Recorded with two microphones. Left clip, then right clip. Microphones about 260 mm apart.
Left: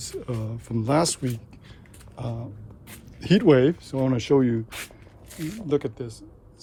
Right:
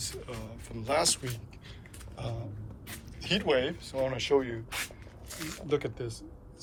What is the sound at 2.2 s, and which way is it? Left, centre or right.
Speech, left.